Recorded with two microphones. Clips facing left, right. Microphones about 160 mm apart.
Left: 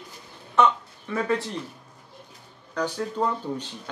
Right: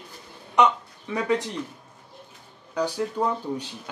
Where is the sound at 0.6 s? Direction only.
15° right (ahead or behind).